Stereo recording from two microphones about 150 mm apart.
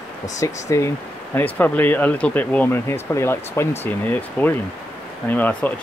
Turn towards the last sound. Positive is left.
turn(degrees=10)  # may be behind; listen again after turning